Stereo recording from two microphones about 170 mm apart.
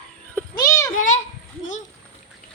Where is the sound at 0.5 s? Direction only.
20° left (ahead or behind).